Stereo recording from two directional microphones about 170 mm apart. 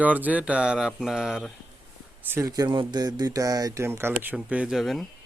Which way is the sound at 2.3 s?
20° right (ahead or behind).